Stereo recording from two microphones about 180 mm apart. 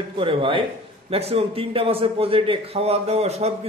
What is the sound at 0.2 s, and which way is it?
A man's voice, 30° right (ahead or behind).